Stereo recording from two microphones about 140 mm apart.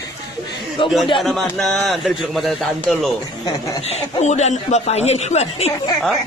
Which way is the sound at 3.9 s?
50° left (ahead or behind).